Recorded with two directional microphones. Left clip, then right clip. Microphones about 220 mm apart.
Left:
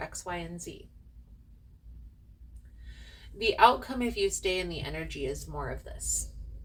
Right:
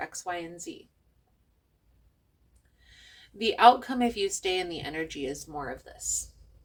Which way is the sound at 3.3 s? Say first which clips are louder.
Right 3 dB; 45° right (ahead or behind).